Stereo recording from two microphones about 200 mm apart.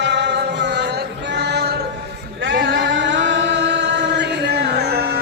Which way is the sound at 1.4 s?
55° right (ahead or behind).